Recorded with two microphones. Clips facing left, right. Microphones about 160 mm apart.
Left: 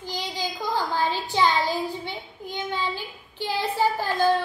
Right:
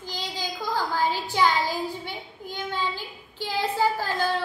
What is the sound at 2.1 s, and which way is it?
A woman's voice, 20° left (ahead or behind).